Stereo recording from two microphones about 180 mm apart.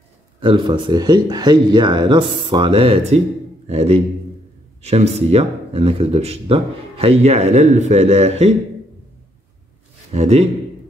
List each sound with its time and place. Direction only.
0.4 s speech: 25° right (ahead or behind)
10.1 s speech: 35° right (ahead or behind)